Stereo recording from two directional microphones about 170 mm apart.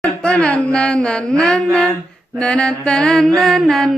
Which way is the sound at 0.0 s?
5° left (ahead or behind).